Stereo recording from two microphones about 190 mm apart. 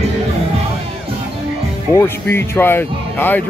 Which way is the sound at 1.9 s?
10° left (ahead or behind).